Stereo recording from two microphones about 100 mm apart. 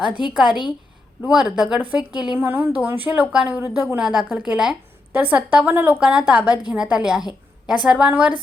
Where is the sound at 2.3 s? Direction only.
20° right (ahead or behind).